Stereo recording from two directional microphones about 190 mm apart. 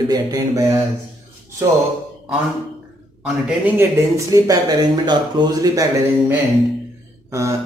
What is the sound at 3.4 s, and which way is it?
Speech, 10° right (ahead or behind).